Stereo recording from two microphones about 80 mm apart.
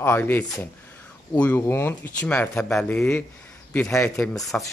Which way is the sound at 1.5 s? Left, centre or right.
Left.